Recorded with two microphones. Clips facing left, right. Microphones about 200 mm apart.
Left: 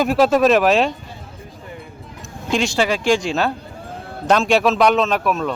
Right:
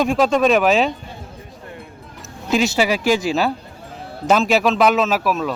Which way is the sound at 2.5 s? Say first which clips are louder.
Right 1 dB; 5° right (ahead or behind).